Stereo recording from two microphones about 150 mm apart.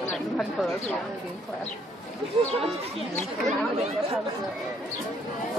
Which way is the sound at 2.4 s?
35° right (ahead or behind).